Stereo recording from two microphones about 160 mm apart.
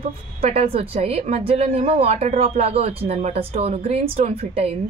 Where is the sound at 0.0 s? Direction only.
40° right (ahead or behind).